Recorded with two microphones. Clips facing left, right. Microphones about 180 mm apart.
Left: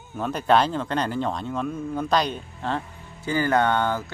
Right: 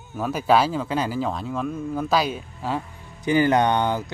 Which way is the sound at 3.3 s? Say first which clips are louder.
Right 3 dB; 20° right (ahead or behind).